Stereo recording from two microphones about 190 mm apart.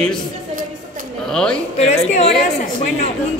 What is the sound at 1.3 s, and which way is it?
Speech, 5° left (ahead or behind).